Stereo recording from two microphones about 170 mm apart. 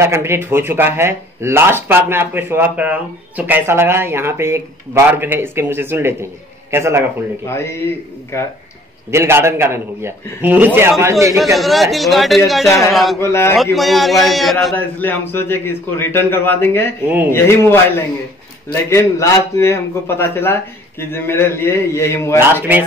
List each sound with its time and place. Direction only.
0.0 s speech: 15° right (ahead or behind)
7.4 s a man's voice: 15° left (ahead or behind)
9.1 s speech: 15° right (ahead or behind)
11.5 s a man's voice: centre (ahead or behind)
12.6 s a man's voice: 15° left (ahead or behind)
12.9 s a man's voice: centre (ahead or behind)
13.2 s a man's voice: 15° left (ahead or behind)
13.7 s a man's voice: centre (ahead or behind)
14.8 s a man's voice: 10° left (ahead or behind)
22.4 s speech: 10° right (ahead or behind)